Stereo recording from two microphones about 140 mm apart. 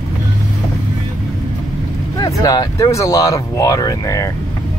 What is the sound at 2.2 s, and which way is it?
Speech, 30° left (ahead or behind).